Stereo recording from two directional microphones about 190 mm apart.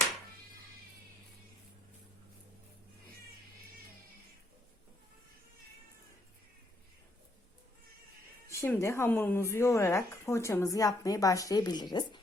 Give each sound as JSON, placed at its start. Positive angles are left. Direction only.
{"t": 8.4, "sound": "speech", "side_deg": 15}